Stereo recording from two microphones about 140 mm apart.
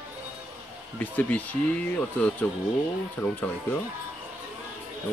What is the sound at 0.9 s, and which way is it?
Speech, 15° left (ahead or behind).